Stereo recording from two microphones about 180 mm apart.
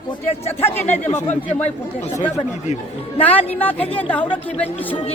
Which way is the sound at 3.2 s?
10° left (ahead or behind).